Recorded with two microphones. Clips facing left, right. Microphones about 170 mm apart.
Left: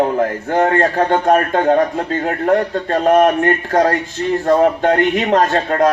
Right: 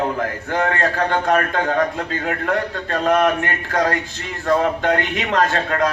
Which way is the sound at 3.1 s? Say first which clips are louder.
Left 6 dB; 40° left (ahead or behind).